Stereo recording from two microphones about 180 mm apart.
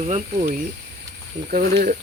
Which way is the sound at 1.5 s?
60° right (ahead or behind).